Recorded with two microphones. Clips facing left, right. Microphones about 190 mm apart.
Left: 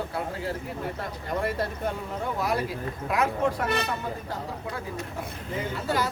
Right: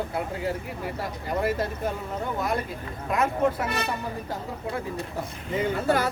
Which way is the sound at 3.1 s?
Centre (ahead or behind).